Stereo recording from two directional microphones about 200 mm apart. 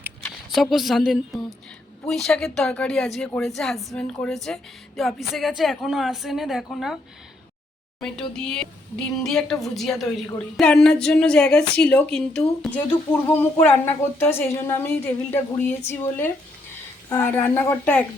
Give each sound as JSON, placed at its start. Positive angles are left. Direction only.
{"t": 0.2, "sound": "a woman's voice", "side_deg": 5}
{"t": 8.3, "sound": "a woman's voice", "side_deg": 5}